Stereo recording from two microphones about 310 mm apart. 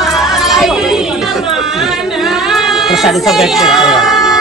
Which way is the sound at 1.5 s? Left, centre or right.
Centre.